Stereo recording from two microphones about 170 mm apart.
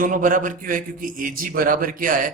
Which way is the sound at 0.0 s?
50° right (ahead or behind).